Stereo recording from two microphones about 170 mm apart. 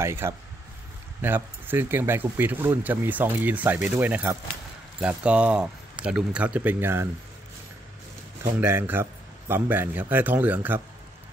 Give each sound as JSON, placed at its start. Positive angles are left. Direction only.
{"t": 0.0, "sound": "speech", "side_deg": -15}
{"t": 8.5, "sound": "speech", "side_deg": -10}